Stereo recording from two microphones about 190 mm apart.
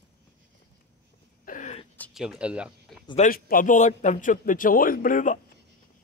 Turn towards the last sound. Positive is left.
turn(degrees=45)  # may be behind; listen again after turning